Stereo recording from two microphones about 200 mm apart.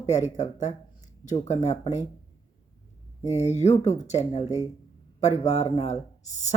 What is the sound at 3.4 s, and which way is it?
A woman's voice, 35° left (ahead or behind).